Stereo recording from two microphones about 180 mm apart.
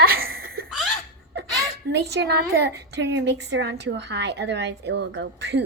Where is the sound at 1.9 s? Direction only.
70° right (ahead or behind).